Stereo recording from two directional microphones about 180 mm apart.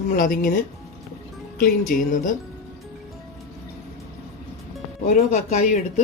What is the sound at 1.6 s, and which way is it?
Speech, 50° left (ahead or behind).